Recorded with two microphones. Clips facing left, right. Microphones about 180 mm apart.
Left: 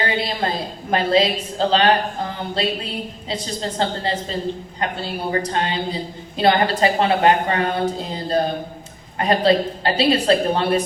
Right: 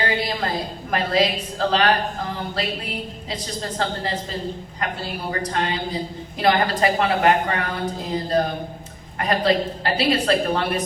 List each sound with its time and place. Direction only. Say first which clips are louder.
0.2 s a woman's voice: left 2 dB; 25° left (ahead or behind)